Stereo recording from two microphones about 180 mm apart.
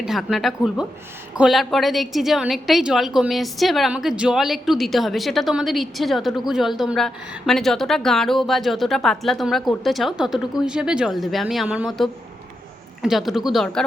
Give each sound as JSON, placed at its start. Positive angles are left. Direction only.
{"t": 0.0, "sound": "a woman's voice", "side_deg": 0}